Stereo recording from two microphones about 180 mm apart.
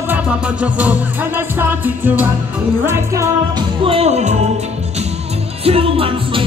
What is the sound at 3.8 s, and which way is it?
Music, 35° right (ahead or behind).